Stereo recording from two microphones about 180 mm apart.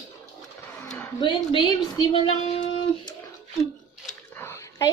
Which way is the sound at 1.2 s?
25° left (ahead or behind).